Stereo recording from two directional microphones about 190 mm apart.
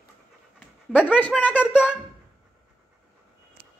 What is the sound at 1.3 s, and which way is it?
Speech, 5° right (ahead or behind).